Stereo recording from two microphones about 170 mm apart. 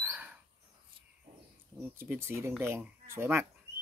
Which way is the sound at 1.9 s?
15° right (ahead or behind).